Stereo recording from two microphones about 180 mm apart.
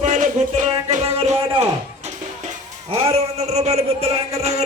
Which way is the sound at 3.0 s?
35° right (ahead or behind).